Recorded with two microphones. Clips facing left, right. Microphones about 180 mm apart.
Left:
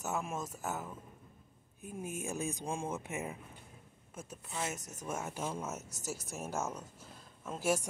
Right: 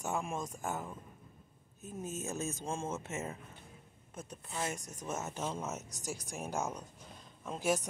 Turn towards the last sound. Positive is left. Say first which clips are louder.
# even
turn(degrees=5)  # may be behind; listen again after turning